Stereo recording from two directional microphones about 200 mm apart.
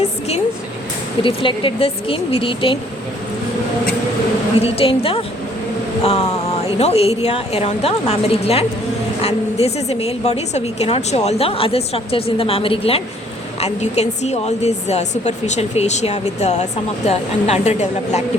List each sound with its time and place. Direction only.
1.2 s speech: 25° left (ahead or behind)
4.6 s a woman's voice: 30° left (ahead or behind)